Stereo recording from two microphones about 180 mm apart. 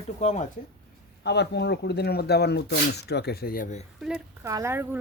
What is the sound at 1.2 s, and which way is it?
Speech, 70° left (ahead or behind).